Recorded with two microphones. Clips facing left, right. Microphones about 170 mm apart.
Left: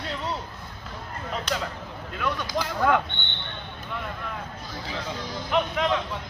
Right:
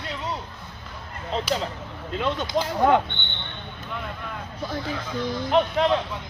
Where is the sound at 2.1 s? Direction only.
25° right (ahead or behind).